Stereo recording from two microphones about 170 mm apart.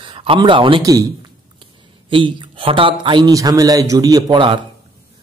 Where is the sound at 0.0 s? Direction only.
30° right (ahead or behind).